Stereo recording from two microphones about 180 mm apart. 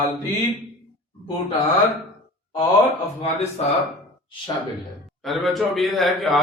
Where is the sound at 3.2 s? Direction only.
35° left (ahead or behind).